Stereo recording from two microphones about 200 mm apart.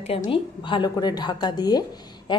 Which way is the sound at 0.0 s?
30° left (ahead or behind).